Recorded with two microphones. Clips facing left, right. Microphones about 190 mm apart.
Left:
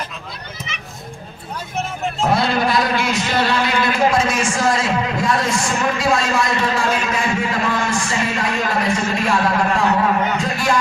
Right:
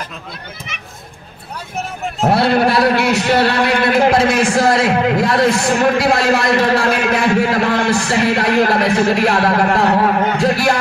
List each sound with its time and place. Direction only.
2.2 s a man's voice: 65° right (ahead or behind)